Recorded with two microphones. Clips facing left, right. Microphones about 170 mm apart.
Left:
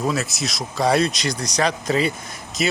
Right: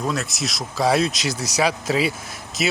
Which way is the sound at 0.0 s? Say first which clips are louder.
Left 2 dB; centre (ahead or behind).